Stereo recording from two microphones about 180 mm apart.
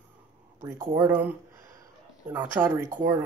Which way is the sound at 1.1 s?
10° right (ahead or behind).